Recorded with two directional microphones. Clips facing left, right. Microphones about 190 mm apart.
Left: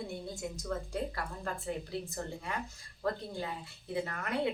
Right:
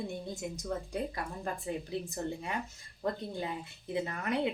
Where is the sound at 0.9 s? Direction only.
15° right (ahead or behind).